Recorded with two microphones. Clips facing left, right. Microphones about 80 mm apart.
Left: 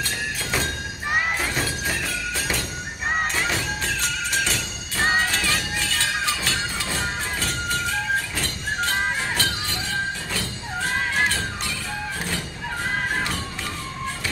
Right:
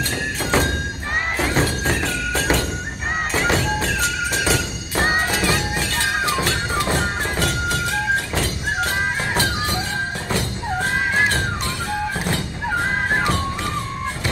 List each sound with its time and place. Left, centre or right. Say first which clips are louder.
1.5 s music: right 6 dB; right
2.3 s music: right 10 dB; right
3.6 s music: right 5 dB; centre
4.9 s music: right 2 dB; centre
6.5 s music: right 6 dB; right